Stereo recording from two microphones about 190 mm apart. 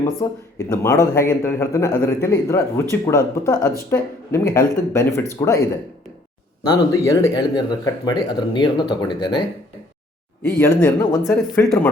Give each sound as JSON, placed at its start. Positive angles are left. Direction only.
{"t": 0.2, "sound": "speech", "side_deg": 20}
{"t": 6.7, "sound": "speech", "side_deg": 20}
{"t": 10.6, "sound": "speech", "side_deg": 10}